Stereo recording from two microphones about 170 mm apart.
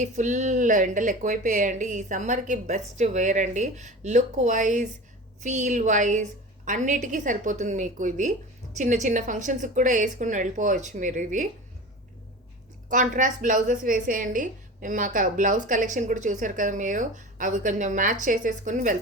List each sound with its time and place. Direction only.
0.0 s a woman's voice: 45° right (ahead or behind)
12.9 s a woman's voice: 50° right (ahead or behind)